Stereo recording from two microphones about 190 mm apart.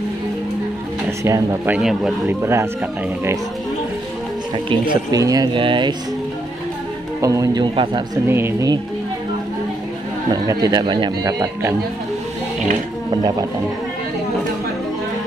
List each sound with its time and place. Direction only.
1.2 s speech: 15° right (ahead or behind)
1.8 s speech: 5° right (ahead or behind)
2.4 s speech: 15° right (ahead or behind)
4.6 s speech: 20° right (ahead or behind)
7.2 s speech: 15° right (ahead or behind)
8.3 s speech: 10° right (ahead or behind)
10.3 s speech: 20° right (ahead or behind)
13.1 s speech: 20° right (ahead or behind)